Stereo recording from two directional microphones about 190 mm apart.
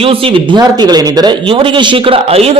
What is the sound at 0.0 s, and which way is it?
A man's voice, 30° right (ahead or behind).